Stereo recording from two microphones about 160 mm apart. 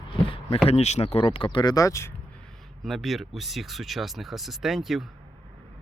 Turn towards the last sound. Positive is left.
turn(degrees=-5)  # may be behind; listen again after turning